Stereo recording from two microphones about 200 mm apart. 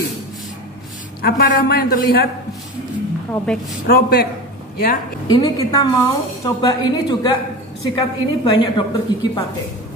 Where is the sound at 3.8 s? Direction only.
50° left (ahead or behind).